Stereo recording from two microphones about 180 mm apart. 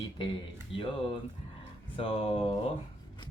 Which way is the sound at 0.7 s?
30° left (ahead or behind).